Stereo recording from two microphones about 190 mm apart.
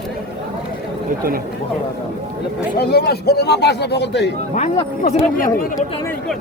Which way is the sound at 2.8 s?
55° left (ahead or behind).